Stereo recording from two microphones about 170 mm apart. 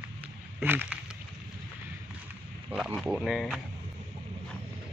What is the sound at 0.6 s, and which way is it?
Speech, 10° right (ahead or behind).